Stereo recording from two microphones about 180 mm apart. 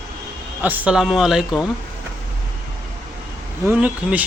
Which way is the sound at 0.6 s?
5° right (ahead or behind).